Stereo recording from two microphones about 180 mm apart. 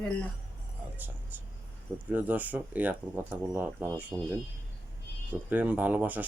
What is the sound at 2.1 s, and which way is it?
Speech, 10° right (ahead or behind).